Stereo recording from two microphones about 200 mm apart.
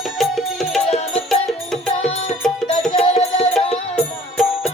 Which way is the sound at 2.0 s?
30° left (ahead or behind).